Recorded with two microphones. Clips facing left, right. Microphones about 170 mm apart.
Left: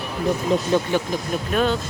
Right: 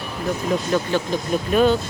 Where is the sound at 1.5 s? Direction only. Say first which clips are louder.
Right 4 dB; centre (ahead or behind).